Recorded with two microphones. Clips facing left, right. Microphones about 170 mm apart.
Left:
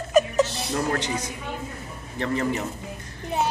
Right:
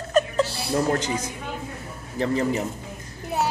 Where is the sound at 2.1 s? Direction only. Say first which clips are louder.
Right 2 dB; 30° right (ahead or behind).